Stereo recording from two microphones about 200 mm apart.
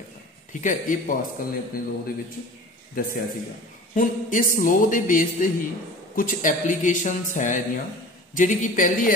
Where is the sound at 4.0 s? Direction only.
40° left (ahead or behind).